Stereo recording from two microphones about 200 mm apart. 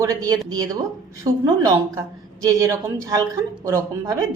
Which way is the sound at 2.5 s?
15° right (ahead or behind).